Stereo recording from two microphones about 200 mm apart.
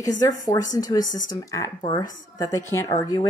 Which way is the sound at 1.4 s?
15° left (ahead or behind).